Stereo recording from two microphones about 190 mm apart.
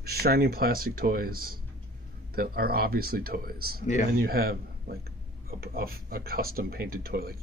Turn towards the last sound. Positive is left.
turn(degrees=-55)  # may be behind; listen again after turning